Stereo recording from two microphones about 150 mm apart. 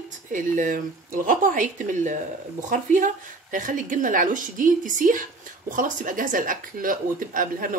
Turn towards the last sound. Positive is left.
turn(degrees=-65)  # may be behind; listen again after turning